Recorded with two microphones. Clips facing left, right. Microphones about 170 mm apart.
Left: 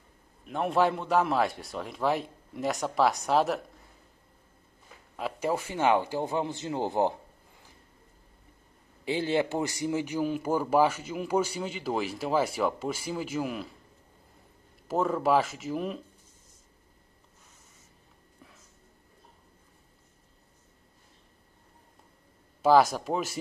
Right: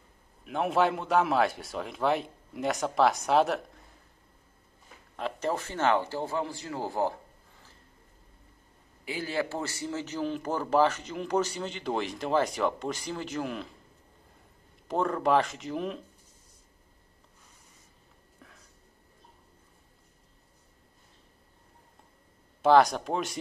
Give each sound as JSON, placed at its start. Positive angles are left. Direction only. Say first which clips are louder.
{"t": 0.5, "sound": "a man's voice", "louder": "even", "side_deg": 0}
{"t": 5.1, "sound": "a man's voice", "louder": "left 1 dB", "side_deg": 10}
{"t": 9.0, "sound": "a man's voice", "louder": "left 5 dB", "side_deg": 25}
{"t": 14.9, "sound": "a man's voice", "louder": "left 1 dB", "side_deg": 5}
{"t": 22.6, "sound": "a man's voice", "louder": "even", "side_deg": 5}